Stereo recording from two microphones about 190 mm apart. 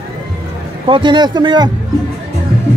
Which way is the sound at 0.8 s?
25° right (ahead or behind).